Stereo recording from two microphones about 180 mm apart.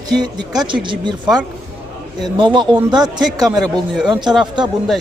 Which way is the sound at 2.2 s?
25° right (ahead or behind).